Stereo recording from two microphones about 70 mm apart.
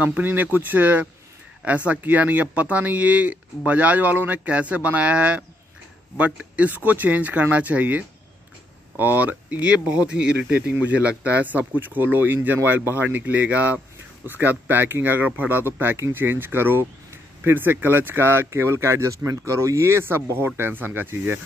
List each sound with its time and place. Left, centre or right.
0.0 s speech: right